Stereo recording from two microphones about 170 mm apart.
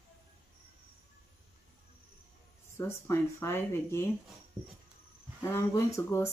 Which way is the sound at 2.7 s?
15° left (ahead or behind).